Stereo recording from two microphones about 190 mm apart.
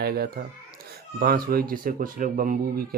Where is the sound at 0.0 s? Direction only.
55° right (ahead or behind).